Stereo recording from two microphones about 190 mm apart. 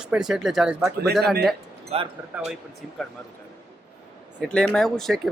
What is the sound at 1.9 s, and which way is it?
Speech, 35° right (ahead or behind).